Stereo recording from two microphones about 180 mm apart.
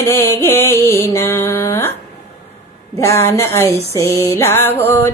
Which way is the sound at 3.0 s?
15° left (ahead or behind).